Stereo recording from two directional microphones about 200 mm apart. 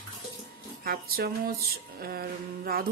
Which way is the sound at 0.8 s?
50° right (ahead or behind).